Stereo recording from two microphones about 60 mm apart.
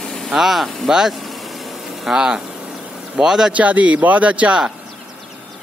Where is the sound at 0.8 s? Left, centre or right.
Centre.